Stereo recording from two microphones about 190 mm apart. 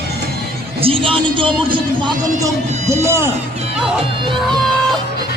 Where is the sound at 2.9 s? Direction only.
15° right (ahead or behind).